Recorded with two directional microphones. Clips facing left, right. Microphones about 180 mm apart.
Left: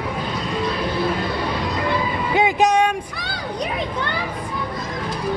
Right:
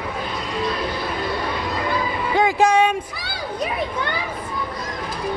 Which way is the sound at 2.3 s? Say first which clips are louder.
Even; 20° left (ahead or behind).